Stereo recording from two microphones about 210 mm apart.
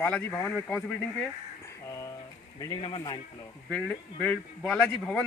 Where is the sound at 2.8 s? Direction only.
20° left (ahead or behind).